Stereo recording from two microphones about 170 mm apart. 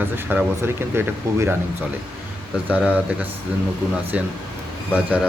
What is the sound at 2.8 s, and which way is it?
Speech, 10° right (ahead or behind).